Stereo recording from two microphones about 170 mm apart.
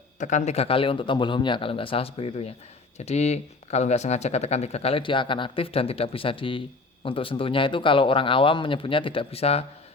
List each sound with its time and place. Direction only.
0.2 s speech: 45° left (ahead or behind)